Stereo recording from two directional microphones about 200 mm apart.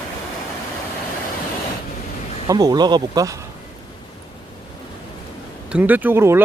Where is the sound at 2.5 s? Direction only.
20° right (ahead or behind).